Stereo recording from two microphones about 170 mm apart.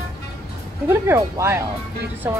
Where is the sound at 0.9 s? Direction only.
15° right (ahead or behind).